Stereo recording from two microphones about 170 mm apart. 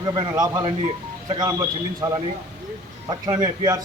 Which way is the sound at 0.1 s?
25° right (ahead or behind).